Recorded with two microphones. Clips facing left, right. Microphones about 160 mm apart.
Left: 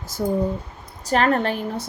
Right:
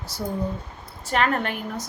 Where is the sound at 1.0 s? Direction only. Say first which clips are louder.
Left 4 dB; 35° left (ahead or behind).